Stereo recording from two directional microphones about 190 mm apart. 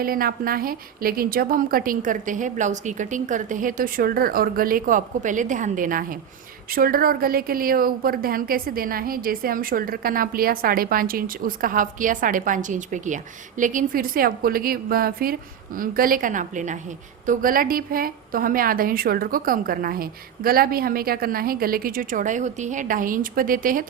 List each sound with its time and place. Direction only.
0.0 s a woman's voice: 50° right (ahead or behind)